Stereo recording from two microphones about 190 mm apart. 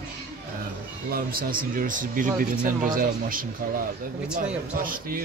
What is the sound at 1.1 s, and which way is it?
Speech, 50° right (ahead or behind).